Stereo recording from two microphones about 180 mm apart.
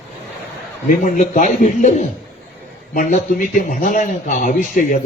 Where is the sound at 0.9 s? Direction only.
45° left (ahead or behind).